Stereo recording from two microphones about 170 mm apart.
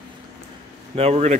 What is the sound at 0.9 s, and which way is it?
Speech, 35° right (ahead or behind).